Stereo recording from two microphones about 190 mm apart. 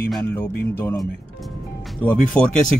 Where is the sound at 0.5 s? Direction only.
55° left (ahead or behind).